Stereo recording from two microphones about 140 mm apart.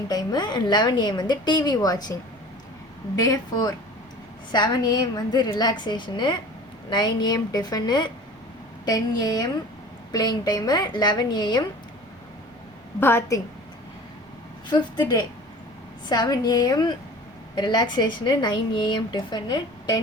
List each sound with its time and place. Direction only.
0.1 s a woman's voice: 25° left (ahead or behind)
3.2 s a woman's voice: 25° left (ahead or behind)
13.0 s a woman's voice: 15° left (ahead or behind)
14.7 s a woman's voice: 30° left (ahead or behind)